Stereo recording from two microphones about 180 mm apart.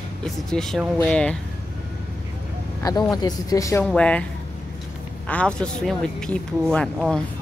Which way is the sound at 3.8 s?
5° left (ahead or behind).